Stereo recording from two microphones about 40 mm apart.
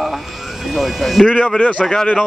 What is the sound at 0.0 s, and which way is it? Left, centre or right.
Vehicle, centre.